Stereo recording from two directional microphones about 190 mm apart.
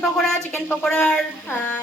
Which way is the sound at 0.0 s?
Centre (ahead or behind).